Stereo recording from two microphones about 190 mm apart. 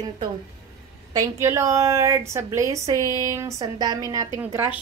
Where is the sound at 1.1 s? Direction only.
15° right (ahead or behind).